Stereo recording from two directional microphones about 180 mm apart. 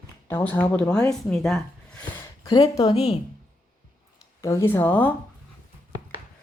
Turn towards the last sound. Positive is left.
turn(degrees=15)  # may be behind; listen again after turning